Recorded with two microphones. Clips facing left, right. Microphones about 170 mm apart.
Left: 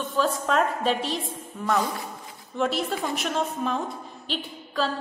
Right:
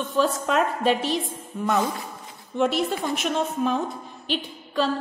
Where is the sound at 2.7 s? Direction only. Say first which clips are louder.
Right 2 dB; centre (ahead or behind).